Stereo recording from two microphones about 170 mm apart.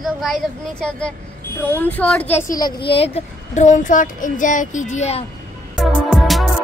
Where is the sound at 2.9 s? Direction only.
35° left (ahead or behind).